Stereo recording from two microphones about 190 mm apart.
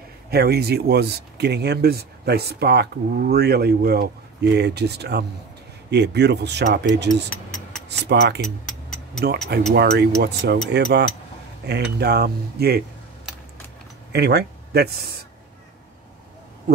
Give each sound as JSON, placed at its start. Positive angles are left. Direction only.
{"t": 0.3, "sound": "speech", "side_deg": -55}
{"t": 8.1, "sound": "speech", "side_deg": -65}
{"t": 14.1, "sound": "speech", "side_deg": -60}